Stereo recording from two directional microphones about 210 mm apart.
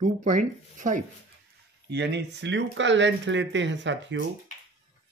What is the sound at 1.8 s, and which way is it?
Speech, 55° right (ahead or behind).